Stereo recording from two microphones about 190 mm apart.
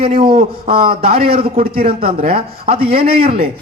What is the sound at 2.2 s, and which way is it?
A man's voice, 30° right (ahead or behind).